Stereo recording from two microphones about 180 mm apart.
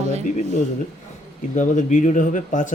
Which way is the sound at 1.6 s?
45° left (ahead or behind).